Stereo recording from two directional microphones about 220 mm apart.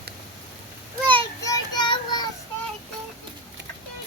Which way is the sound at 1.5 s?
20° left (ahead or behind).